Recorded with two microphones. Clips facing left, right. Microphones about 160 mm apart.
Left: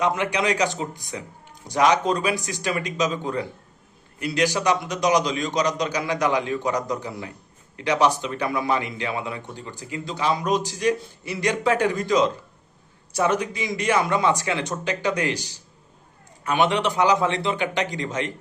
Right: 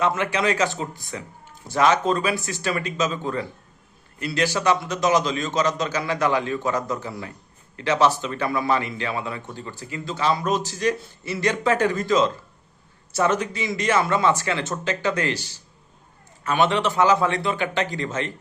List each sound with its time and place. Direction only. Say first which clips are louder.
0.0 s a man's voice: even; 15° left (ahead or behind)